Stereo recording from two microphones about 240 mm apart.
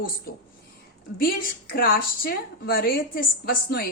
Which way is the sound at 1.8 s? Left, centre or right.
Left.